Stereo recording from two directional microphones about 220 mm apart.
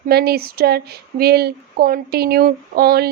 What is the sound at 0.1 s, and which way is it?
Speech, 45° right (ahead or behind).